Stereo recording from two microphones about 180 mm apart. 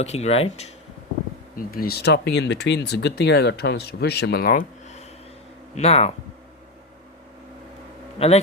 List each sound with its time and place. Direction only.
0.0 s speech: 35° left (ahead or behind)
1.5 s speech: 55° left (ahead or behind); by 6.1 s 35° left (ahead or behind)
8.2 s speech: 35° left (ahead or behind)